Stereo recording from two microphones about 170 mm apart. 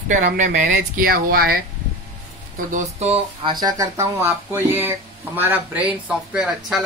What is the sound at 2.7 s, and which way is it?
Speech, 35° right (ahead or behind).